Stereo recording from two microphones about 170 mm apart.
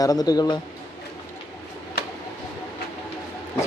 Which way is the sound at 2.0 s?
70° left (ahead or behind).